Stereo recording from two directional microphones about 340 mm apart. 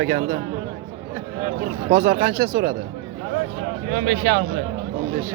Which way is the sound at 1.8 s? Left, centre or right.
Centre.